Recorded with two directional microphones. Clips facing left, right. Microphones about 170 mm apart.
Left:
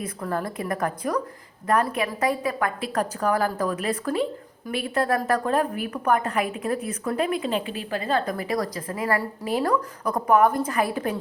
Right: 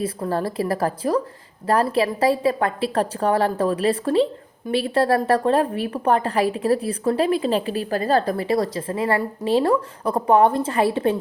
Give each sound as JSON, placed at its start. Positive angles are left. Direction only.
{"t": 0.0, "sound": "a woman's voice", "side_deg": -30}